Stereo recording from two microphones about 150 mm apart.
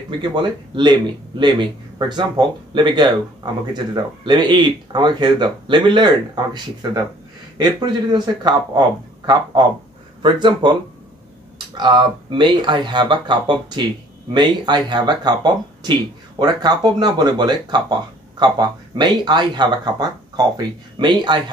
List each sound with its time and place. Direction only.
0.2 s speech: 30° right (ahead or behind)